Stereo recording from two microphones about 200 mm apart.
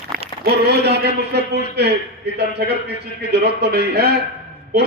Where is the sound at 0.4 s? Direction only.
55° right (ahead or behind).